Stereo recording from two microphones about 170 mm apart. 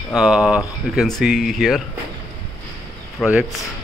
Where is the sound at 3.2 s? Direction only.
Centre (ahead or behind).